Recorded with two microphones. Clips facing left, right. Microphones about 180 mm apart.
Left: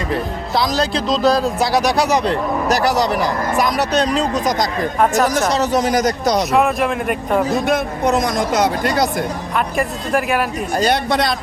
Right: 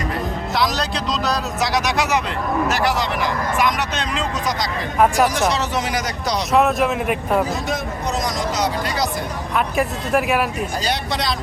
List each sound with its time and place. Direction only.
0.5 s speech: 30° left (ahead or behind); by 4.9 s 45° left (ahead or behind)
4.9 s speech: 10° right (ahead or behind)
5.3 s speech: 40° left (ahead or behind)
6.5 s speech: centre (ahead or behind)
7.5 s speech: 55° left (ahead or behind)
9.6 s speech: centre (ahead or behind)
10.8 s speech: 55° left (ahead or behind)